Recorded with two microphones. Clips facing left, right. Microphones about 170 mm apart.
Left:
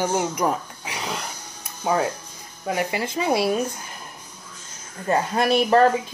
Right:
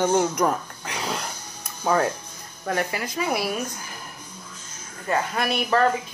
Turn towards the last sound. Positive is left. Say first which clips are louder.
# left 5 dB
turn(degrees=30)  # may be behind; listen again after turning